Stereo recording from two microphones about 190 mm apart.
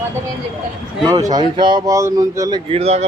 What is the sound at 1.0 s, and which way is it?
Speech, 20° right (ahead or behind).